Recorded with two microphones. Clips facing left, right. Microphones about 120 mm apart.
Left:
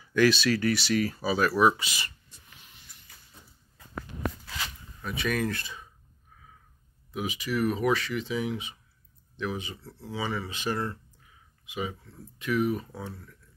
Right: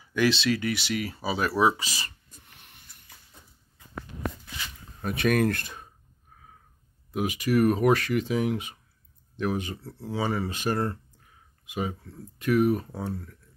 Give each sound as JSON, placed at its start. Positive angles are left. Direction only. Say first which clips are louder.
{"t": 0.1, "sound": "speech", "louder": "left 1 dB", "side_deg": -20}
{"t": 2.4, "sound": "snort", "louder": "left 1 dB", "side_deg": -60}
{"t": 5.0, "sound": "speech", "louder": "right 6 dB", "side_deg": -60}
{"t": 7.1, "sound": "speech", "louder": "right 5 dB", "side_deg": -50}